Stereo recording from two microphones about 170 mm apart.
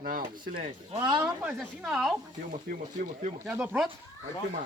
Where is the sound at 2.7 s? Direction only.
50° right (ahead or behind).